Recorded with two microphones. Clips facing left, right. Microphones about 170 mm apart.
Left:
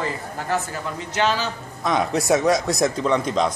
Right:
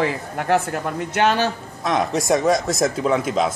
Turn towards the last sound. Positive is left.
turn(degrees=-5)  # may be behind; listen again after turning